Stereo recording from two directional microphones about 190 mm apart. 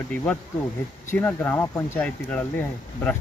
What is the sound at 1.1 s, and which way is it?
Speech, 10° left (ahead or behind).